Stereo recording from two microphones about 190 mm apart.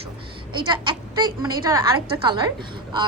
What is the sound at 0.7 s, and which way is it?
A woman's voice, 25° right (ahead or behind).